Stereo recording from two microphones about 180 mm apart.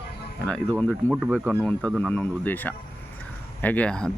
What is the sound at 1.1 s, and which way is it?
Speech, 5° right (ahead or behind).